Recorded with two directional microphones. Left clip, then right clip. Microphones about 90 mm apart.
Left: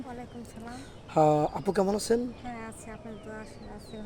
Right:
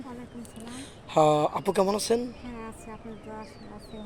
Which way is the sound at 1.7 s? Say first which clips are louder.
Right 1 dB; 45° left (ahead or behind).